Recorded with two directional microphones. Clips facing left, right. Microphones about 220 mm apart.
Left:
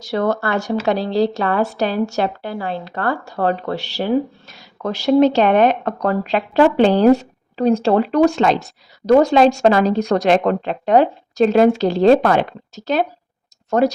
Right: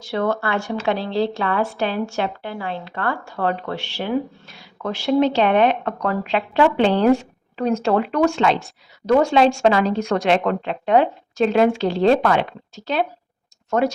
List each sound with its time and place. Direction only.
0.0 s speech: 40° left (ahead or behind)